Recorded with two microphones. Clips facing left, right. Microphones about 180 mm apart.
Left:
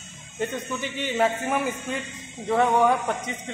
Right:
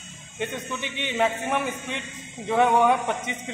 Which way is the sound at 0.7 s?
40° left (ahead or behind).